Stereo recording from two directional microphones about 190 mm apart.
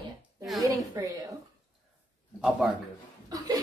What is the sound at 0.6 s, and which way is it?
Speech, 15° right (ahead or behind).